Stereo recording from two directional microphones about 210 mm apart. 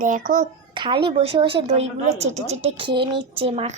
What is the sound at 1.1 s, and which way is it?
A woman's voice, 30° right (ahead or behind).